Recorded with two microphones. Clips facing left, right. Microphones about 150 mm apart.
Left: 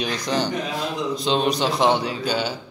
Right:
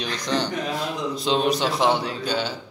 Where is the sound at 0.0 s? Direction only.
10° left (ahead or behind).